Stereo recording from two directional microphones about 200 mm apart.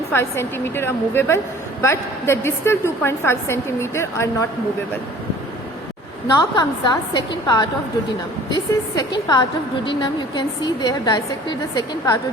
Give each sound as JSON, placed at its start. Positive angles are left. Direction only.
{"t": 0.1, "sound": "a woman's voice", "side_deg": 10}
{"t": 6.3, "sound": "a woman's voice", "side_deg": 20}